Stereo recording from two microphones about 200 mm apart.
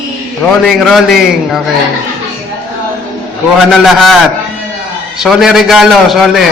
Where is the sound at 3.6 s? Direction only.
Centre (ahead or behind).